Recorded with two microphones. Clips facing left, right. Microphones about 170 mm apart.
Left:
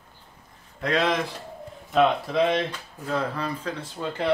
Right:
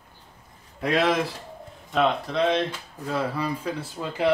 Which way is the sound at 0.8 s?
10° right (ahead or behind).